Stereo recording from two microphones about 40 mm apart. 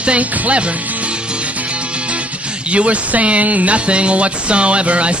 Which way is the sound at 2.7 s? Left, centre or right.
Right.